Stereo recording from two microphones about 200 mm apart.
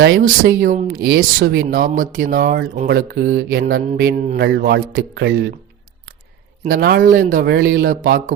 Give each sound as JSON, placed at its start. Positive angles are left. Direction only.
{"t": 0.0, "sound": "speech", "side_deg": -50}
{"t": 6.7, "sound": "speech", "side_deg": -50}